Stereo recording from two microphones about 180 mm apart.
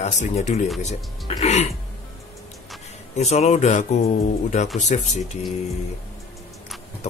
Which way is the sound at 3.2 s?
40° left (ahead or behind).